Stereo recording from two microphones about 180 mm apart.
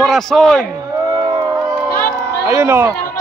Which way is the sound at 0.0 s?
Centre (ahead or behind).